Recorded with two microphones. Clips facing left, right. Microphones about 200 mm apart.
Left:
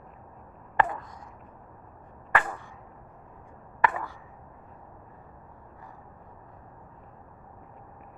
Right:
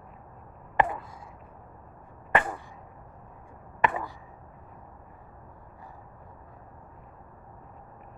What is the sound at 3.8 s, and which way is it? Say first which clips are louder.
Chop: even; 20° right (ahead or behind).